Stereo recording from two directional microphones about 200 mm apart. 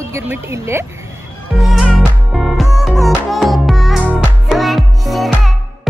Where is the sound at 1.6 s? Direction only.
Centre (ahead or behind).